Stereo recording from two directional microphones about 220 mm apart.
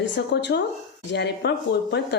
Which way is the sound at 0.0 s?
50° left (ahead or behind).